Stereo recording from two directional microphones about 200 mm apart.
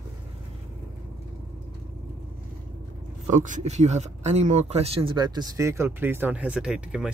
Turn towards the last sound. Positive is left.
turn(degrees=-5)  # may be behind; listen again after turning